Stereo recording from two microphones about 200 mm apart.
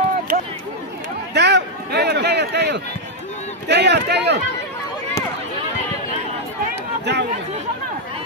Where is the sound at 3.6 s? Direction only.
55° right (ahead or behind).